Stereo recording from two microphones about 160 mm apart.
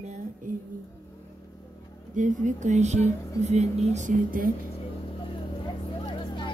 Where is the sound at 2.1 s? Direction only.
50° right (ahead or behind).